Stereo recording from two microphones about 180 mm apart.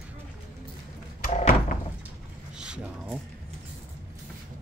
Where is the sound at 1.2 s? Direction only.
50° left (ahead or behind).